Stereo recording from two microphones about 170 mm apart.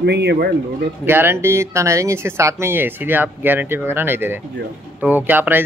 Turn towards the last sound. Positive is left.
turn(degrees=-10)  # may be behind; listen again after turning